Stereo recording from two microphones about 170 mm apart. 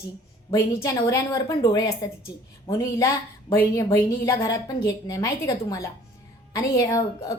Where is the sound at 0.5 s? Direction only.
20° left (ahead or behind).